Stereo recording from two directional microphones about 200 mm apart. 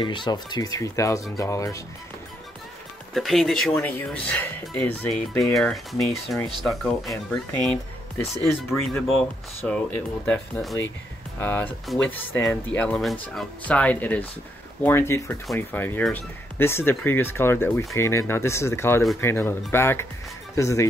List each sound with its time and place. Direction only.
0.0 s speech: 25° left (ahead or behind)
3.2 s speech: centre (ahead or behind)